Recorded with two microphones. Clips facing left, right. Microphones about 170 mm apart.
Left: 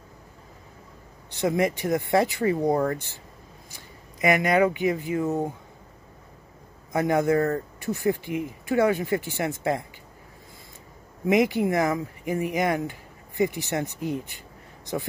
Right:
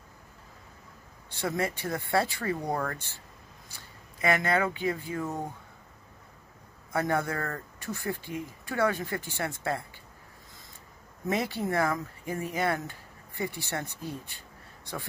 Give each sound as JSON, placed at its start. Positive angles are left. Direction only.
{"t": 1.4, "sound": "speech", "side_deg": 15}
{"t": 2.6, "sound": "speech", "side_deg": 30}
{"t": 3.7, "sound": "speech", "side_deg": 15}
{"t": 6.9, "sound": "speech", "side_deg": 15}
{"t": 11.2, "sound": "speech", "side_deg": 15}